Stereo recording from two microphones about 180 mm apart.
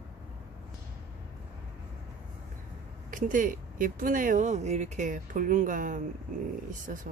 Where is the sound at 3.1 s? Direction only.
45° right (ahead or behind).